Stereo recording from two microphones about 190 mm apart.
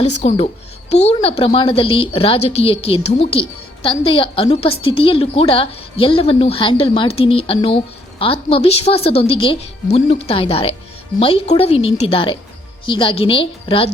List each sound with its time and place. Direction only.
0.0 s a woman's voice: 35° left (ahead or behind)